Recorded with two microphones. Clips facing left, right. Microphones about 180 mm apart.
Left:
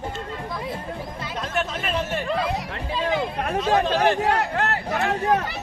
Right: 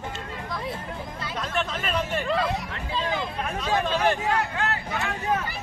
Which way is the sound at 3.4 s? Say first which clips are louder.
Left 5 dB; 65° left (ahead or behind).